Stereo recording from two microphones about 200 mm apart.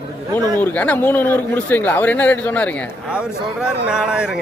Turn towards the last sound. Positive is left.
turn(degrees=-5)  # may be behind; listen again after turning